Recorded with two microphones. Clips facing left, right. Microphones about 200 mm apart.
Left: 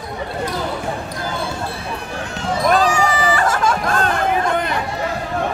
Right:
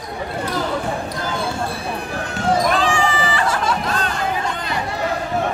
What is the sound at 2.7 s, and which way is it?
Chatter, 40° left (ahead or behind).